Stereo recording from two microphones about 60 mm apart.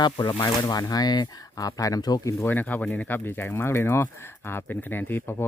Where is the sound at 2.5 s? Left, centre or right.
Left.